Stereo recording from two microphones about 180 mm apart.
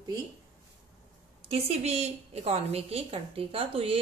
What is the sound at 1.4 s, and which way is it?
A woman's voice, 35° right (ahead or behind).